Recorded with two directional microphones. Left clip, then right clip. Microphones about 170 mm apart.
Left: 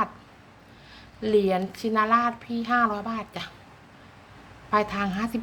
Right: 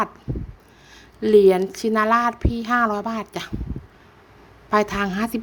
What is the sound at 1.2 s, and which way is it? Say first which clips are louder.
A woman's voice: right 8 dB; 50° right (ahead or behind).